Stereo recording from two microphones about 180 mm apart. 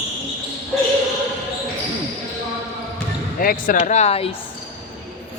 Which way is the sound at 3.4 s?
50° left (ahead or behind).